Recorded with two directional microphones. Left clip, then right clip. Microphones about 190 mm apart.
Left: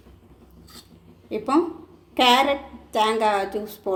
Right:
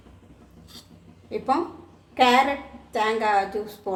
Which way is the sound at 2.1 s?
35° left (ahead or behind).